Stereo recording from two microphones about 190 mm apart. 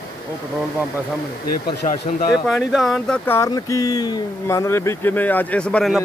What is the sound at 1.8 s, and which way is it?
Speech, 35° left (ahead or behind).